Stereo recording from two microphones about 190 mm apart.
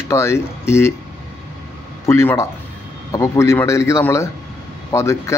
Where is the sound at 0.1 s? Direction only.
15° left (ahead or behind).